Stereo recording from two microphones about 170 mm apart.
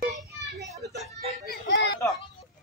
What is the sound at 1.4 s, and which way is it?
Speech, 75° left (ahead or behind).